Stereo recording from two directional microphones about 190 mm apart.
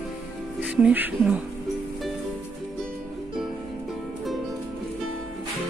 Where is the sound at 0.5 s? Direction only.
5° right (ahead or behind).